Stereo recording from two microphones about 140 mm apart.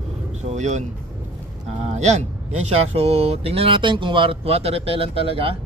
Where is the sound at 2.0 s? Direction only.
55° right (ahead or behind).